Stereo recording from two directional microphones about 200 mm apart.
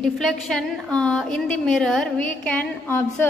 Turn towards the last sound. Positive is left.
turn(degrees=10)  # may be behind; listen again after turning